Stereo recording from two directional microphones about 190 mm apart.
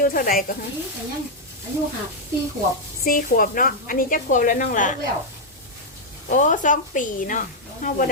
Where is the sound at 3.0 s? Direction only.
45° left (ahead or behind).